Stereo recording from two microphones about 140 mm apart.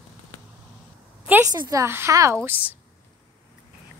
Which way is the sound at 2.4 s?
10° right (ahead or behind).